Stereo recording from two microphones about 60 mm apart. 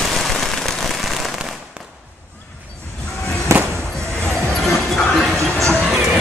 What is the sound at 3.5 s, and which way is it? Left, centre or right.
Music, right.